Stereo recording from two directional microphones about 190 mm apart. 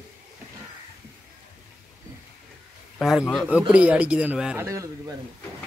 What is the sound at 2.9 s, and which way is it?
A man's voice, centre (ahead or behind).